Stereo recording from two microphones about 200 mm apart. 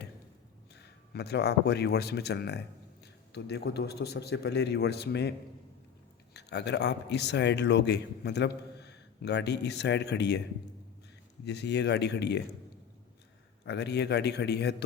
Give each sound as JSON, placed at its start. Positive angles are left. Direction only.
{"t": 1.1, "sound": "a man's voice", "side_deg": 55}
{"t": 6.3, "sound": "a man's voice", "side_deg": 60}
{"t": 11.4, "sound": "a man's voice", "side_deg": 60}
{"t": 13.7, "sound": "a man's voice", "side_deg": 55}